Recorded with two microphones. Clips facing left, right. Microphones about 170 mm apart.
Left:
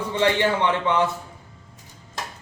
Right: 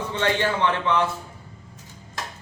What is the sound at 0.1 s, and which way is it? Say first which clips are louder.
Speech: left 3 dB; 15° left (ahead or behind).